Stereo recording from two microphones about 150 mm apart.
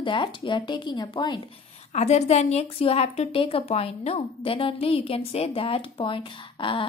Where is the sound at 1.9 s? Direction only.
50° left (ahead or behind).